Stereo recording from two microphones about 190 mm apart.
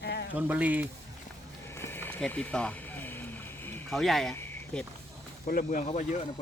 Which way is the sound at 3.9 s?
Centre (ahead or behind).